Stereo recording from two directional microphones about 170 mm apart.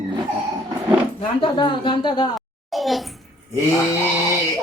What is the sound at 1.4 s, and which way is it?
Speech, 30° left (ahead or behind).